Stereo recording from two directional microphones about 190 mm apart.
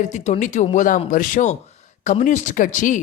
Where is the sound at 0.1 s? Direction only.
40° left (ahead or behind).